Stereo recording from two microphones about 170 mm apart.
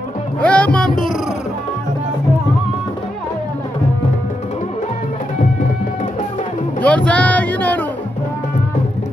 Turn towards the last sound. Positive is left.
turn(degrees=10)  # may be behind; listen again after turning